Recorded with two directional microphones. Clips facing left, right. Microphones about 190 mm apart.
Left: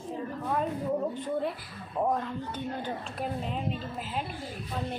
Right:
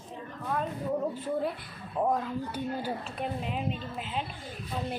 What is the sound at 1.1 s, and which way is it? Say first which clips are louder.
Speech: even; centre (ahead or behind).